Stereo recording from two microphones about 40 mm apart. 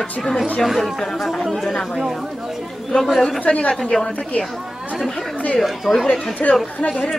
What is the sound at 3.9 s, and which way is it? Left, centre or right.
Speech, left.